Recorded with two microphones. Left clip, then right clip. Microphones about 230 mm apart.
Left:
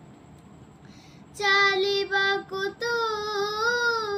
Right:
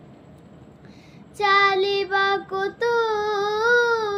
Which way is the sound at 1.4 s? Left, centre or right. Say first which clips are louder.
Right 3 dB; centre.